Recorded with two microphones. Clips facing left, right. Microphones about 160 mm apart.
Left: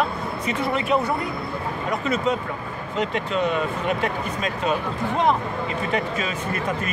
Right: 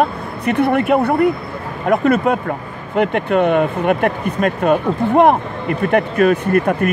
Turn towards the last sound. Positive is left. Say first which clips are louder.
# right 10 dB
turn(degrees=-60)  # may be behind; listen again after turning